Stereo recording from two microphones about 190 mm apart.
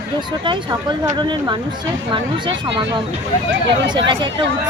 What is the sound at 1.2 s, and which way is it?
Speech, 25° right (ahead or behind).